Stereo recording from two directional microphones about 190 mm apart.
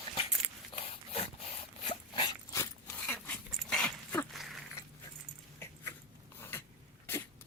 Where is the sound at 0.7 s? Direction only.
30° left (ahead or behind).